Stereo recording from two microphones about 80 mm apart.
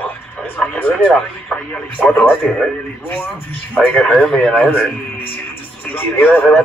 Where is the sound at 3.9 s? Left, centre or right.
Centre.